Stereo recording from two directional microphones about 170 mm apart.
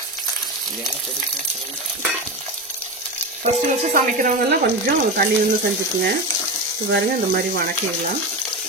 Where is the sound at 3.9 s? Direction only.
55° right (ahead or behind).